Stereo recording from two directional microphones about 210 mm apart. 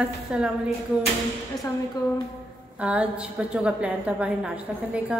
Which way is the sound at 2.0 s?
20° left (ahead or behind).